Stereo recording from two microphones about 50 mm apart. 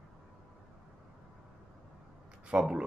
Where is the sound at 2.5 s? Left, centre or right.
Right.